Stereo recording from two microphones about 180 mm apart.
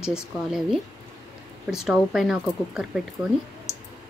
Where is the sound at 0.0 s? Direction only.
5° right (ahead or behind).